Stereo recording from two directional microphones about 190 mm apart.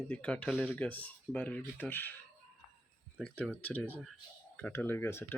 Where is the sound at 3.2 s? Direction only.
5° left (ahead or behind).